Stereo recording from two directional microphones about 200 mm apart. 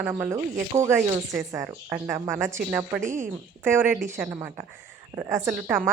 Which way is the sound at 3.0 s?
40° right (ahead or behind).